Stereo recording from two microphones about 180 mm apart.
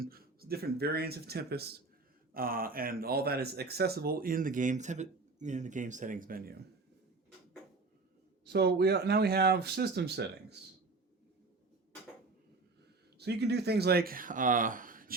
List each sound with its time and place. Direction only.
0.0 s speech: 55° right (ahead or behind)
8.4 s speech: 65° right (ahead or behind)
13.1 s speech: 65° right (ahead or behind); by 15.1 s 50° right (ahead or behind)